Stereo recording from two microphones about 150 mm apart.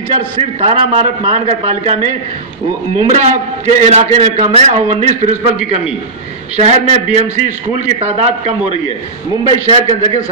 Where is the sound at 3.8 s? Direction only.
45° right (ahead or behind).